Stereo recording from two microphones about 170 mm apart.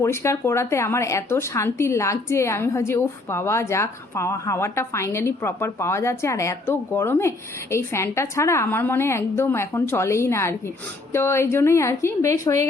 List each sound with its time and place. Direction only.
0.0 s speech: 15° left (ahead or behind)